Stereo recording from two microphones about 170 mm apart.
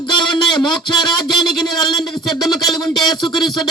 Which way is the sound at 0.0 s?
25° left (ahead or behind).